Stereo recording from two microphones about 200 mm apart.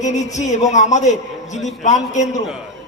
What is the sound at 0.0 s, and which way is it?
A man's voice, 35° left (ahead or behind).